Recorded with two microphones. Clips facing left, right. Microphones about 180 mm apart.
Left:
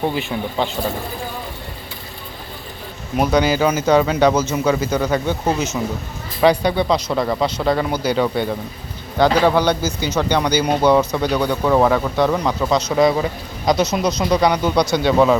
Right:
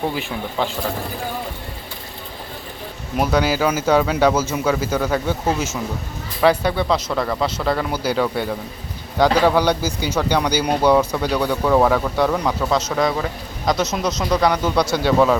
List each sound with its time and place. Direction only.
0.2 s speech: centre (ahead or behind)
3.2 s speech: 5° right (ahead or behind)
6.4 s speech: 5° right (ahead or behind)